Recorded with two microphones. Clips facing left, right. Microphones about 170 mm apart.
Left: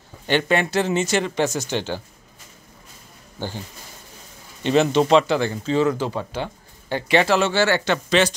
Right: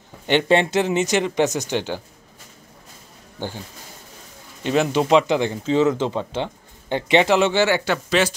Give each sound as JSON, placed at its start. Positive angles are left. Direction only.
{"t": 0.3, "sound": "speech", "side_deg": -25}
{"t": 4.6, "sound": "speech", "side_deg": -10}